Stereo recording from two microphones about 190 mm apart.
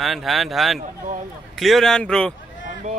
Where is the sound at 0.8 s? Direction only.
40° right (ahead or behind).